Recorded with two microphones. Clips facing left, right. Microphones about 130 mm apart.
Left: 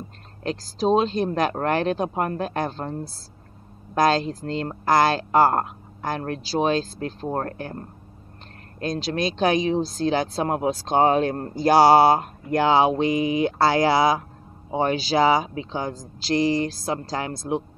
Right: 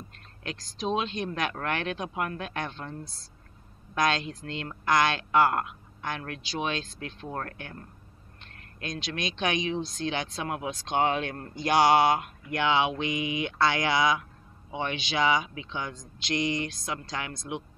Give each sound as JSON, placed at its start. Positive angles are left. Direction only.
{"t": 0.4, "sound": "speech", "side_deg": 35}